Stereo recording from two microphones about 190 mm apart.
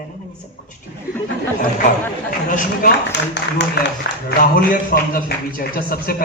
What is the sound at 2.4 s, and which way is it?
Speech, 45° left (ahead or behind).